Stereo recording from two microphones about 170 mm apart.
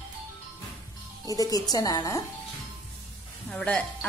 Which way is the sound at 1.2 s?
20° left (ahead or behind).